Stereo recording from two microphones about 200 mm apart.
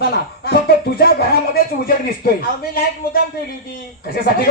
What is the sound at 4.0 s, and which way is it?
Speech, 50° left (ahead or behind).